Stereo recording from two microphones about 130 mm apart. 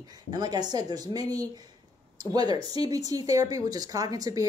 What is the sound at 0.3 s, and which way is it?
Speech, 30° right (ahead or behind).